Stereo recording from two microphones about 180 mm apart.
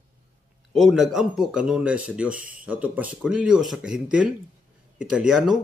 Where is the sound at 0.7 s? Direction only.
Centre (ahead or behind).